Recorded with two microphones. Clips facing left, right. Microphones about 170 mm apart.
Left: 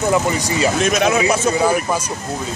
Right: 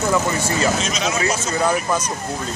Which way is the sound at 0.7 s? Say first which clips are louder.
Left 7 dB; 60° left (ahead or behind).